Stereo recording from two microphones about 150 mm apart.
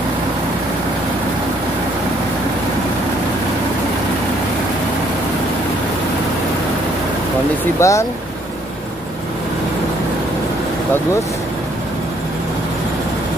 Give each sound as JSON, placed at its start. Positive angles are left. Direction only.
{"t": 7.8, "sound": "speech", "side_deg": 20}